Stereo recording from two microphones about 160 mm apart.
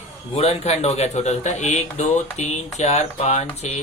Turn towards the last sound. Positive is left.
turn(degrees=45)  # may be behind; listen again after turning